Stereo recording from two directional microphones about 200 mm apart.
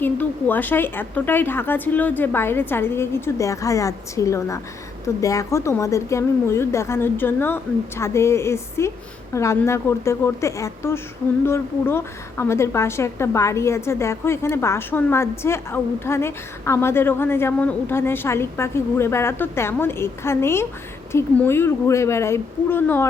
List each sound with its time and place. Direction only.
0.0 s a woman's voice: 10° left (ahead or behind)